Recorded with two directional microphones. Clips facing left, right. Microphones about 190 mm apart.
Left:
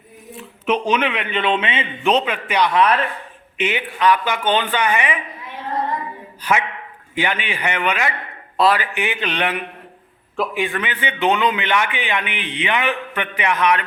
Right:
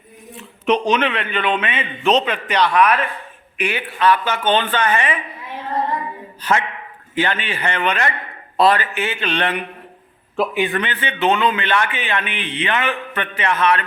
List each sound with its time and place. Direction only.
0.3 s speech: 5° left (ahead or behind)
1.3 s a man's voice: 25° left (ahead or behind)
2.0 s a man's voice: 10° left (ahead or behind)
2.7 s speech: 30° left (ahead or behind)
3.6 s a man's voice: 20° left (ahead or behind)
6.4 s a man's voice: 10° left (ahead or behind)
10.3 s a man's voice: centre (ahead or behind)
10.8 s a man's voice: 10° left (ahead or behind)